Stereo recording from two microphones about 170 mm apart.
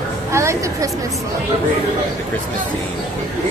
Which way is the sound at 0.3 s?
15° right (ahead or behind).